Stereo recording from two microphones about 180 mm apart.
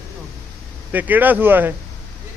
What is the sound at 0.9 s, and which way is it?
Speech, 10° right (ahead or behind).